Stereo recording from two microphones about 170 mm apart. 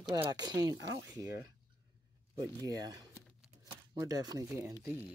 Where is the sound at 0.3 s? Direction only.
25° right (ahead or behind).